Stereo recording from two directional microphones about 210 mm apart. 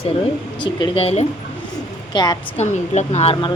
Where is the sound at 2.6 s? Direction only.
30° left (ahead or behind).